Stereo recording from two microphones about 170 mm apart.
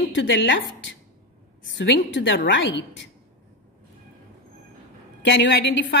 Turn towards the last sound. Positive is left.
turn(degrees=90)